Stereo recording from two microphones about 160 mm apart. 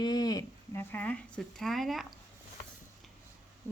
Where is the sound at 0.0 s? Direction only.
25° left (ahead or behind); by 2.1 s centre (ahead or behind).